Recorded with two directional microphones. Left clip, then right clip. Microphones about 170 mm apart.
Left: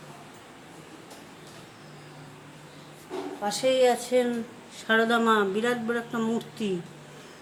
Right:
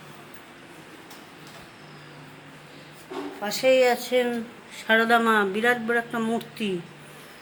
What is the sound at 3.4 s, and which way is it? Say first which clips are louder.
Speech: right 3 dB; 10° right (ahead or behind).